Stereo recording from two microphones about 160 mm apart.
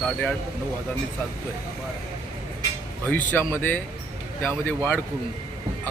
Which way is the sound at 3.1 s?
10° left (ahead or behind).